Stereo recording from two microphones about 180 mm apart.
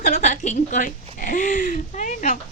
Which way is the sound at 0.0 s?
40° left (ahead or behind).